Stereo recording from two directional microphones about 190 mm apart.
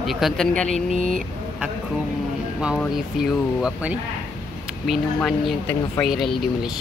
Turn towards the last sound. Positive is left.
turn(degrees=0)  # may be behind; listen again after turning